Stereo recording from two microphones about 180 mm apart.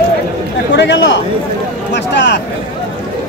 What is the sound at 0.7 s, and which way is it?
Speech, 80° left.